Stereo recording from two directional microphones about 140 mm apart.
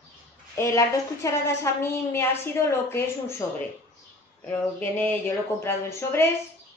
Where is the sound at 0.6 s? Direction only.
20° left (ahead or behind).